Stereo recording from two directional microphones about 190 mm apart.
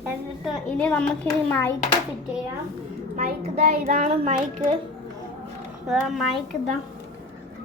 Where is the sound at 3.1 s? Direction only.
35° right (ahead or behind).